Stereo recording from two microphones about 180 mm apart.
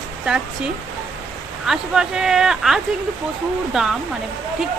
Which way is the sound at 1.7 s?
5° right (ahead or behind).